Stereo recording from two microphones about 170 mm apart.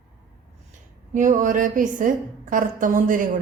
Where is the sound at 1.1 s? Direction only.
50° right (ahead or behind).